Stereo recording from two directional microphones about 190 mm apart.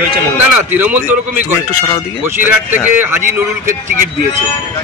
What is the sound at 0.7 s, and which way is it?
Speech, 10° right (ahead or behind).